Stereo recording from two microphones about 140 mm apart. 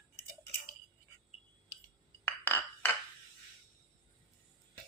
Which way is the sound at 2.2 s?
15° left (ahead or behind).